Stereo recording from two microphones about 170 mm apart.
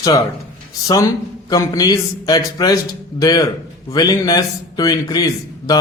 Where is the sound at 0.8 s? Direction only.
20° left (ahead or behind).